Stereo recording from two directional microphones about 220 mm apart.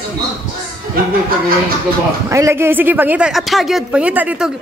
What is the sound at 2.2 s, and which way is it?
A woman's voice, 15° right (ahead or behind).